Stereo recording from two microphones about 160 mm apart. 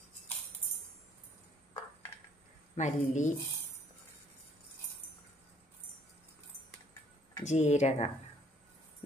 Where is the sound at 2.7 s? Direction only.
50° left (ahead or behind).